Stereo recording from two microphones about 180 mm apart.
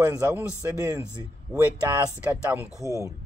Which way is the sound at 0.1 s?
10° right (ahead or behind).